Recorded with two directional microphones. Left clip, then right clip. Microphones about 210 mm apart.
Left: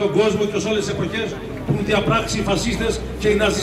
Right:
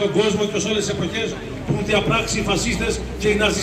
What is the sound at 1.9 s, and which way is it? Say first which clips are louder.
A man's voice: even; 50° left (ahead or behind).